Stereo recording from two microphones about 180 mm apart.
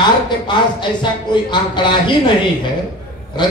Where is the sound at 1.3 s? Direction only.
25° left (ahead or behind).